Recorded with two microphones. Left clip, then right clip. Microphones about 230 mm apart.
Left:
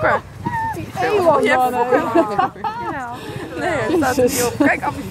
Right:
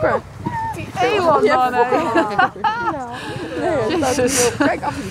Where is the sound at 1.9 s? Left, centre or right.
Left.